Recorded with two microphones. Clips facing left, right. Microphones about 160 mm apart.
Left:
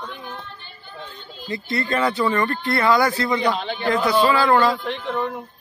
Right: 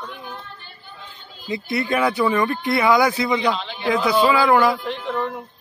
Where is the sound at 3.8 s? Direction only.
10° right (ahead or behind).